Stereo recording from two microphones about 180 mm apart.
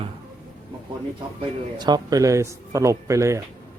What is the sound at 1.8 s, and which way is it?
Speech, 25° right (ahead or behind).